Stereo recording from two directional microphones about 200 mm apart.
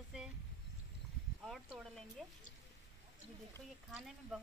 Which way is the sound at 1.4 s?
Centre (ahead or behind).